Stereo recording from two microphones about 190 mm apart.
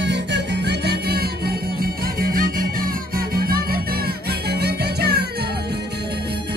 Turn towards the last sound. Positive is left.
turn(degrees=-60)  # may be behind; listen again after turning